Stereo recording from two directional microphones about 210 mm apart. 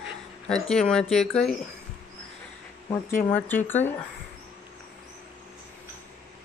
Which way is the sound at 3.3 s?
10° left (ahead or behind).